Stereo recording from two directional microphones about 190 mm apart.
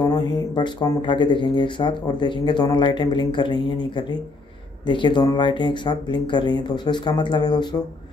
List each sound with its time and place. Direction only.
0.0 s speech: 20° left (ahead or behind)